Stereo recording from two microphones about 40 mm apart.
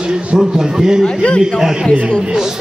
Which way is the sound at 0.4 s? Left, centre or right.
Centre.